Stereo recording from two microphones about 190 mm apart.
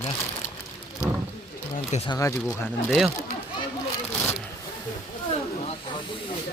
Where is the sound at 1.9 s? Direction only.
35° left (ahead or behind).